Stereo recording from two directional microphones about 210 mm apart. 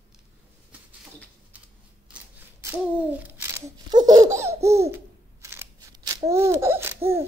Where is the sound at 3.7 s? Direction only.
20° right (ahead or behind).